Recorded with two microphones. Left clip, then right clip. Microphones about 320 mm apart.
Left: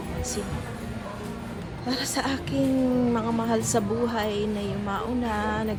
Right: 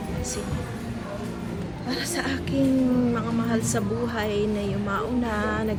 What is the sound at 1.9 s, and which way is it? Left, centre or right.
A woman's voice, centre.